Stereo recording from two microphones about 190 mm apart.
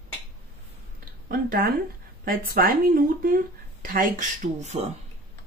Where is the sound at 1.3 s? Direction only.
50° right (ahead or behind).